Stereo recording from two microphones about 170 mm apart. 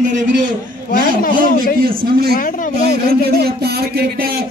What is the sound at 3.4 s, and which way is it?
Speech, 65° right (ahead or behind).